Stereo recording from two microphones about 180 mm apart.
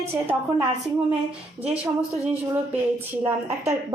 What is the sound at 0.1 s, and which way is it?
A woman's voice, 10° right (ahead or behind).